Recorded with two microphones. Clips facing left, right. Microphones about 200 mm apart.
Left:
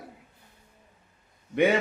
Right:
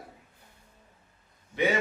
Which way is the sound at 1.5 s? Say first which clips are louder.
Left 5 dB; 60° left (ahead or behind).